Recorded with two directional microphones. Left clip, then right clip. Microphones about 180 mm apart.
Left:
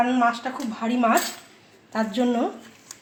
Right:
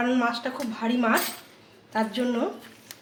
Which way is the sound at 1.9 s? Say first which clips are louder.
Left 3 dB; 45° left (ahead or behind).